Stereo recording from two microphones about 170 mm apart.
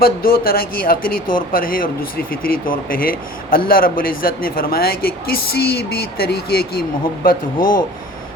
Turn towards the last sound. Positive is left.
turn(degrees=55)  # may be behind; listen again after turning